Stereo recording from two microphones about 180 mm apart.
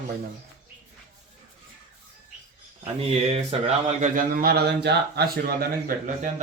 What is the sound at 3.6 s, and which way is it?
A man's voice, 40° right (ahead or behind).